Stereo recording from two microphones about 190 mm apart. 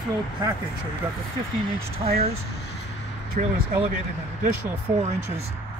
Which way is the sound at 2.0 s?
25° right (ahead or behind).